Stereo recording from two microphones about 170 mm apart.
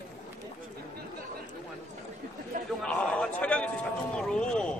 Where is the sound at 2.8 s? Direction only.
5° left (ahead or behind).